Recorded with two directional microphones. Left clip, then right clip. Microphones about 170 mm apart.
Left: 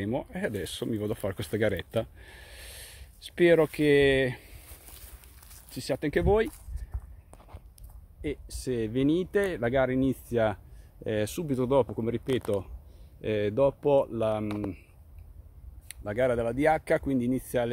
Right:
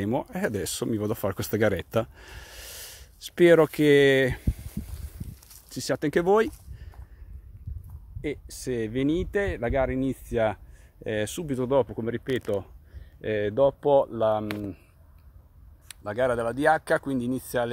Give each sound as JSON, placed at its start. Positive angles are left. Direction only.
{"t": 0.0, "sound": "speech", "side_deg": -40}
{"t": 5.7, "sound": "speech", "side_deg": -45}
{"t": 8.2, "sound": "speech", "side_deg": -35}
{"t": 11.7, "sound": "speech", "side_deg": 0}
{"t": 16.0, "sound": "speech", "side_deg": 0}